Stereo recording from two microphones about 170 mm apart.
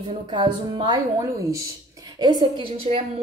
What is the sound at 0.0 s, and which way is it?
A woman's voice, 30° right (ahead or behind).